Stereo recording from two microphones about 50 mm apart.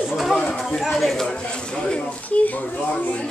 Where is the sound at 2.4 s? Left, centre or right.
Left.